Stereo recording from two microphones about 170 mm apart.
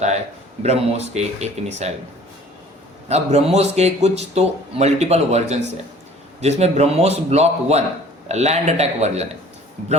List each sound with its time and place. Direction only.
0.6 s speech: 40° right (ahead or behind)
3.1 s speech: 40° right (ahead or behind)